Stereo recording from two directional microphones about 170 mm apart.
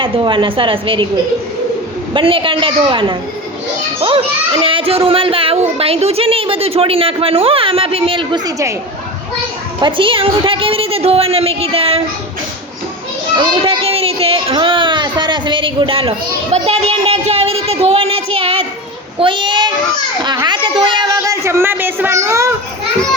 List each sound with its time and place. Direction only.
0.0 s speech: 30° right (ahead or behind)
2.1 s speech: 30° right (ahead or behind)
4.6 s speech: 35° right (ahead or behind)
9.8 s speech: 30° right (ahead or behind)
13.3 s child singing: 30° right (ahead or behind)
16.6 s a child's voice: 40° right (ahead or behind); by 22.5 s 15° right (ahead or behind)